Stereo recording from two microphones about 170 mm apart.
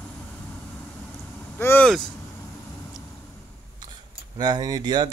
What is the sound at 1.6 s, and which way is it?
Speech, 10° left (ahead or behind).